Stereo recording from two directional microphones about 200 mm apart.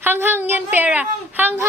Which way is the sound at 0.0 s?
10° right (ahead or behind).